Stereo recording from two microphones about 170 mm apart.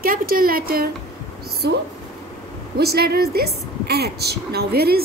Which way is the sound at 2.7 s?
65° right (ahead or behind).